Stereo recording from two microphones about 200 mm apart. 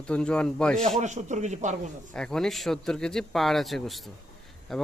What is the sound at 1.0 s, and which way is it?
Speech, 35° right (ahead or behind).